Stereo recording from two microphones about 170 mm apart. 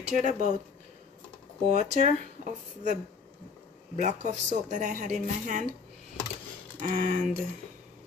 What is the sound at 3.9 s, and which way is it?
A woman's voice, 45° right (ahead or behind).